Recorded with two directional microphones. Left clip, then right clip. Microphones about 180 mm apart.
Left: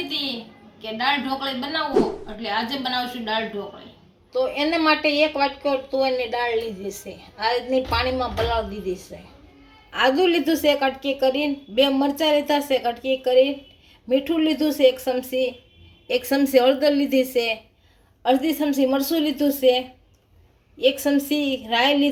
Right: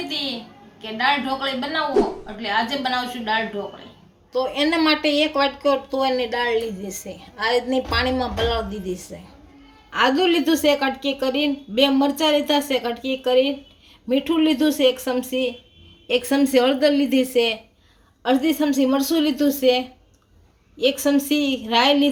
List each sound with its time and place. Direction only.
0.1 s a woman's voice: centre (ahead or behind)
4.3 s speech: 45° right (ahead or behind)
10.0 s speech: 45° right (ahead or behind)
21.2 s speech: 45° right (ahead or behind)